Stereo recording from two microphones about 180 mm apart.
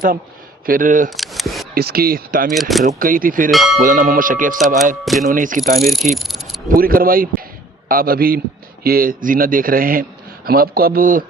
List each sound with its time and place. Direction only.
0.6 s a man's voice: 50° right (ahead or behind)
1.1 s scissors: centre (ahead or behind)
1.7 s speech: 60° right (ahead or behind)
2.6 s speech: centre (ahead or behind)
2.8 s a man's voice: 50° right (ahead or behind)
3.5 s speech: centre (ahead or behind)
3.8 s a man's voice: 50° right (ahead or behind)
5.0 s speech: centre (ahead or behind)
5.3 s a man's voice: 50° right (ahead or behind)
6.1 s cricket: centre (ahead or behind)
6.7 s a man's voice: 55° right (ahead or behind)